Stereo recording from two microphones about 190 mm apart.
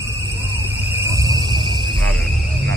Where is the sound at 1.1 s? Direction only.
20° right (ahead or behind).